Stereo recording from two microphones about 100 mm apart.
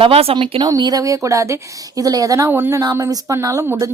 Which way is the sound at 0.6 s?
45° right (ahead or behind).